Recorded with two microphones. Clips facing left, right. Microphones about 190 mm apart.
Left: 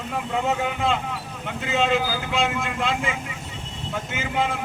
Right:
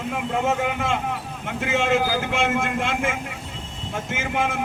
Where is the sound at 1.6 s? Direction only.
55° right (ahead or behind).